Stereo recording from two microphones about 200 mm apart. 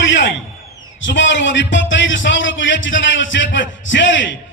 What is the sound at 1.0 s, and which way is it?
A man's voice, 65° left (ahead or behind).